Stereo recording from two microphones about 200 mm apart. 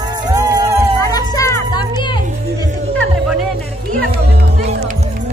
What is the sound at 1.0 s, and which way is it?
Music, 15° left (ahead or behind).